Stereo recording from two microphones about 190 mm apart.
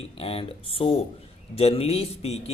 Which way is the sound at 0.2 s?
30° left (ahead or behind).